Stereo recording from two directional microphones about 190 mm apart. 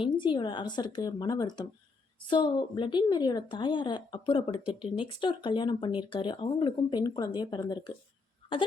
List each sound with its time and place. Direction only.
0.0 s a woman's voice: 25° left (ahead or behind)